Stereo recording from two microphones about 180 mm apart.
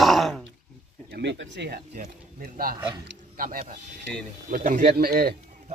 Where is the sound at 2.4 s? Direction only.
55° right (ahead or behind).